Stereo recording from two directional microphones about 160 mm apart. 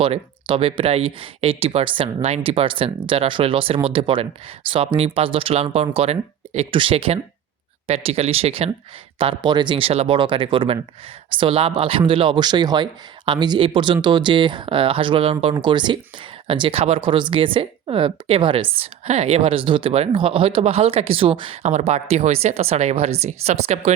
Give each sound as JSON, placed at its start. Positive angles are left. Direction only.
{"t": 0.0, "sound": "a woman's voice", "side_deg": -35}
{"t": 21.6, "sound": "a woman's voice", "side_deg": -45}